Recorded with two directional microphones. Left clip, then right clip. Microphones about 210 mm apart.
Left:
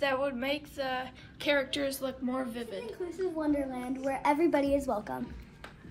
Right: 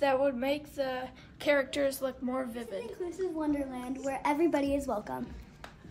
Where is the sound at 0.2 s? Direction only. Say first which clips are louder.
Right 3 dB; 45° right (ahead or behind).